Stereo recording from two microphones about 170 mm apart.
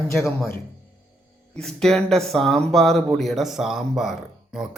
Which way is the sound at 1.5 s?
5° left (ahead or behind).